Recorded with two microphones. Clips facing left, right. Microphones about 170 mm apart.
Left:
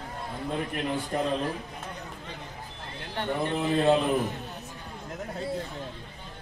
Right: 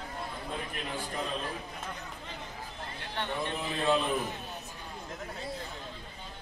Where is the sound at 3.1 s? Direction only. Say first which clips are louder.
Left 6 dB; 50° left (ahead or behind).